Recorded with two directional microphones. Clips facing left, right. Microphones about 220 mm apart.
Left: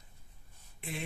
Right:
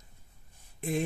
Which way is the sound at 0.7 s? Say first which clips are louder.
Right 11 dB; 45° right (ahead or behind).